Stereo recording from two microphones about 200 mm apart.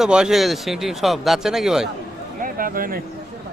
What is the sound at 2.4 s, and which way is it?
Speech, 45° right (ahead or behind).